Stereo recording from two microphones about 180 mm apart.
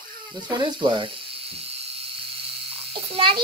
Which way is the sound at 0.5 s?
25° right (ahead or behind).